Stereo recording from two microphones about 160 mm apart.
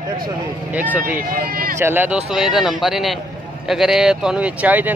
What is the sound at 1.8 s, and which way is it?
Speech, 10° right (ahead or behind).